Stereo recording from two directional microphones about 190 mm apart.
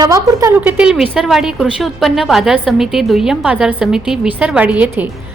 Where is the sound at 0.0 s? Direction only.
20° right (ahead or behind).